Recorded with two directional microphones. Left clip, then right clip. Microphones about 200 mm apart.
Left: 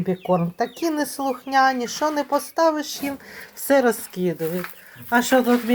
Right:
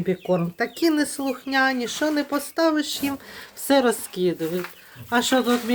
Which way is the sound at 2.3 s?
25° right (ahead or behind).